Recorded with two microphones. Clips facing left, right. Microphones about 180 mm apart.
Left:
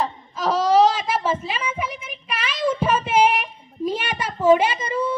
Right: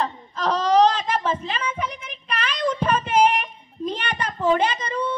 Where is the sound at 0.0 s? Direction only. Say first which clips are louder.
Left 1 dB; 5° left (ahead or behind).